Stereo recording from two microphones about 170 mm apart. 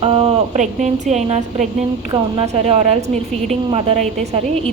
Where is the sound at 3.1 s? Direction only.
Centre (ahead or behind).